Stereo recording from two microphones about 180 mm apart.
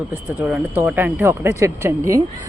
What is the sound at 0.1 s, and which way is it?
Speech, 5° right (ahead or behind).